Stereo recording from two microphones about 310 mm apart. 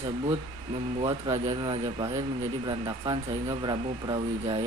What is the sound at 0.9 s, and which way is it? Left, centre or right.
Speech, centre.